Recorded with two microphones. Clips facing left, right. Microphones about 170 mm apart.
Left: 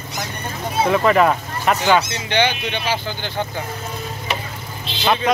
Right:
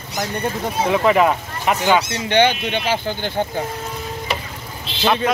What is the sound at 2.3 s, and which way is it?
Speech, 50° right (ahead or behind).